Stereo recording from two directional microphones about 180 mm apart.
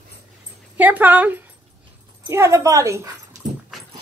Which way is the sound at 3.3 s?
20° right (ahead or behind).